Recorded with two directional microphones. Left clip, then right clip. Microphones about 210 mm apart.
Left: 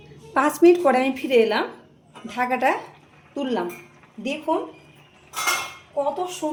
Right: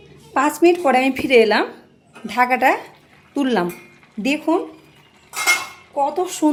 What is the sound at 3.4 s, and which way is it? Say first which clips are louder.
Speech: right 6 dB; 35° right (ahead or behind).